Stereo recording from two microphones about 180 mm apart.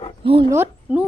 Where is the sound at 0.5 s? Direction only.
10° right (ahead or behind).